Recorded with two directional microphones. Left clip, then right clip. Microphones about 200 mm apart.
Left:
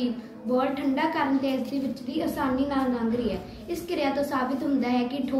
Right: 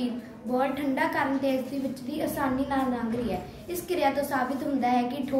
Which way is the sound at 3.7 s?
20° right (ahead or behind).